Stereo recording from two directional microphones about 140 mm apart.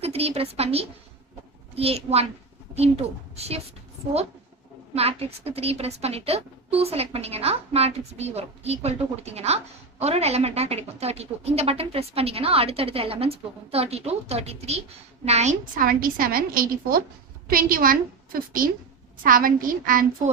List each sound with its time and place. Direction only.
0.0 s a woman's voice: 45° right (ahead or behind)
4.9 s a woman's voice: 45° right (ahead or behind); by 20.1 s 80° right